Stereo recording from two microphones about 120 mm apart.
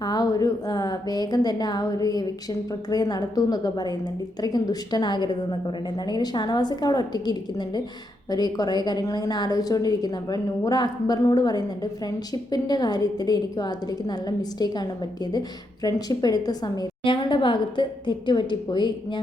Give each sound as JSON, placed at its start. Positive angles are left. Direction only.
{"t": 0.0, "sound": "a woman's voice", "side_deg": 35}